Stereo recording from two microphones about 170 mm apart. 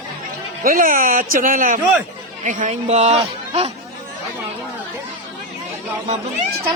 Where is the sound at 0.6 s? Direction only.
55° right (ahead or behind); by 3.7 s 40° right (ahead or behind).